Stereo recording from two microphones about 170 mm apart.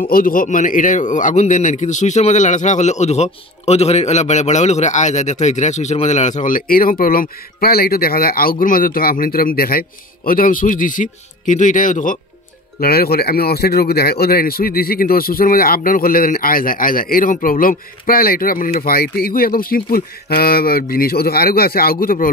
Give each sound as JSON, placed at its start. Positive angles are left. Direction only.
{"t": 0.0, "sound": "a man's voice", "side_deg": 55}
{"t": 12.8, "sound": "speech", "side_deg": 65}